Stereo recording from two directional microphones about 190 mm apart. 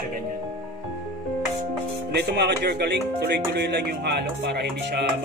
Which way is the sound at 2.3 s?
60° right (ahead or behind).